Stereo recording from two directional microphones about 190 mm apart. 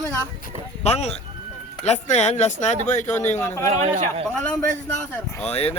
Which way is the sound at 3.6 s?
40° right (ahead or behind).